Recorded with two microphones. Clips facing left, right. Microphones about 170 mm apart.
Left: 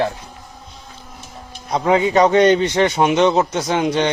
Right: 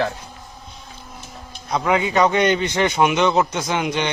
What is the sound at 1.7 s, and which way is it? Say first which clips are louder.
A man's voice: left 4 dB; 30° left (ahead or behind).